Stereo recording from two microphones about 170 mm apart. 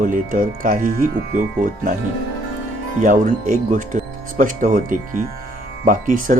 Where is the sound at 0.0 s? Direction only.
55° right (ahead or behind).